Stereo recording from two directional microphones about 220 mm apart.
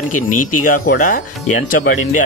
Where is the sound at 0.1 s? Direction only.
35° left (ahead or behind).